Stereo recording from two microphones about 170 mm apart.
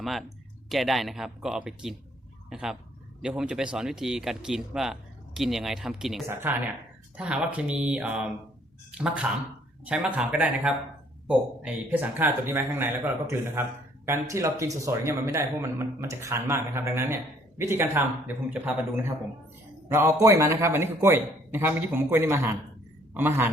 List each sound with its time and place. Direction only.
0.0 s speech: centre (ahead or behind)
6.2 s speech: 15° right (ahead or behind)
9.8 s speech: 5° right (ahead or behind)